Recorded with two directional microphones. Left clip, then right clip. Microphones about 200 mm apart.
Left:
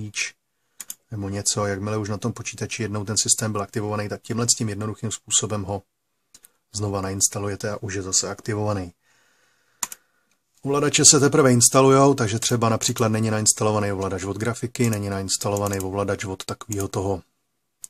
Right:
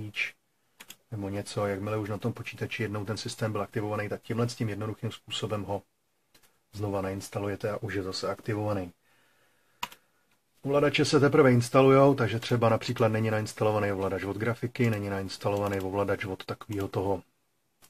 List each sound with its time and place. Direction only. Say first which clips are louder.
0.1 s speech: left 4 dB; 45° left (ahead or behind)
10.6 s speech: left 6 dB; 40° left (ahead or behind)